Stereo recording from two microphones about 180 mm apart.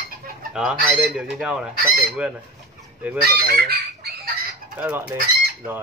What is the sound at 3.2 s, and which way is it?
Fowl, 60° right (ahead or behind).